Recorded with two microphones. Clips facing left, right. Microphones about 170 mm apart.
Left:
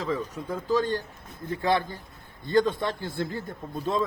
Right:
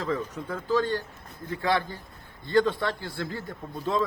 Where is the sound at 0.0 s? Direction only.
10° left (ahead or behind).